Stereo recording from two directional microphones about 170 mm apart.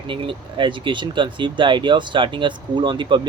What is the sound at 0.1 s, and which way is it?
Speech, 30° right (ahead or behind).